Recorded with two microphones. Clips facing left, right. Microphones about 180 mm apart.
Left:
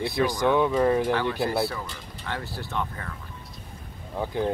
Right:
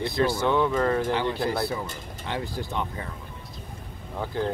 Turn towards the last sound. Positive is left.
turn(degrees=15)  # may be behind; listen again after turning